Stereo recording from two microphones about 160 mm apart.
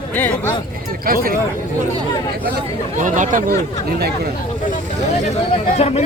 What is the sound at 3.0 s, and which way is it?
Speech, 50° right (ahead or behind).